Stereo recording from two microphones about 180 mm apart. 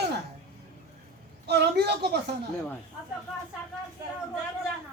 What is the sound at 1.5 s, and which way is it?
Speech, 65° right (ahead or behind).